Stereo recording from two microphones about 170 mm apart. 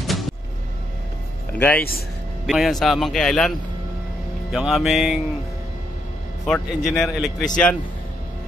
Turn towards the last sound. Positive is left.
turn(degrees=0)  # may be behind; listen again after turning